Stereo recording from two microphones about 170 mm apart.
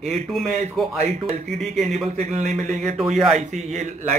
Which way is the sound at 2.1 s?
45° right (ahead or behind).